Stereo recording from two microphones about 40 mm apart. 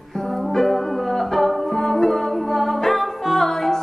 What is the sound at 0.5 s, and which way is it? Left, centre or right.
Music, centre.